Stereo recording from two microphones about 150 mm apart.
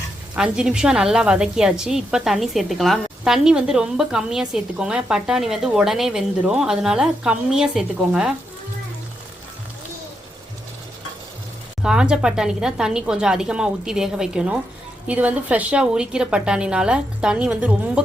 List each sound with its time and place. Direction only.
0.3 s a woman's voice: 5° right (ahead or behind)
11.8 s a woman's voice: 5° right (ahead or behind)